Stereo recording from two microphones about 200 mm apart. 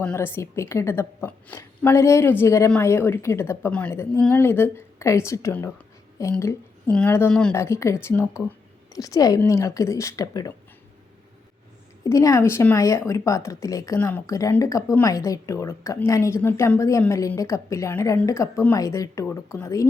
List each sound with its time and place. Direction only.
0.0 s speech: 10° left (ahead or behind)
12.0 s speech: 15° left (ahead or behind)